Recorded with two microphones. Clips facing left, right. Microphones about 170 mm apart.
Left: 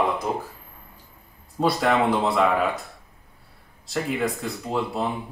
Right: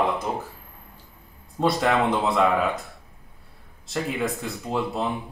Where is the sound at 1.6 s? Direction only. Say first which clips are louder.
Left 1 dB; centre (ahead or behind).